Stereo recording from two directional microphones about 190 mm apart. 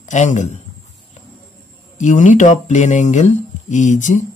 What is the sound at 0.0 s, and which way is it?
Speech, 40° left (ahead or behind).